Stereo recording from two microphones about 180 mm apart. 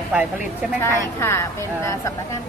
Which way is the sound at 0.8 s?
15° left (ahead or behind).